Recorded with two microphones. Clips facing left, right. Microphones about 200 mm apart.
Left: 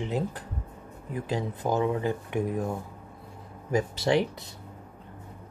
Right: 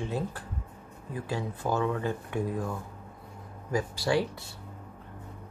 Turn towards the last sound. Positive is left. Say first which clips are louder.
# left 3 dB
turn(degrees=20)  # may be behind; listen again after turning